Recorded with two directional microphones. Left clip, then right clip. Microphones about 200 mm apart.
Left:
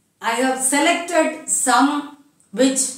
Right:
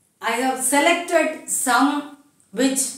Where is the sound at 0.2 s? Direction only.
15° right (ahead or behind).